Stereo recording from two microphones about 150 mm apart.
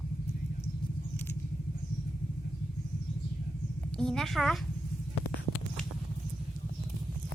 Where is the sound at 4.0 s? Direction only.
5° left (ahead or behind).